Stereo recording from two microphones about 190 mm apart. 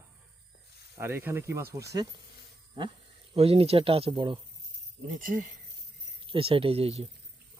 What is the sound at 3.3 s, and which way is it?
Speech, 30° right (ahead or behind).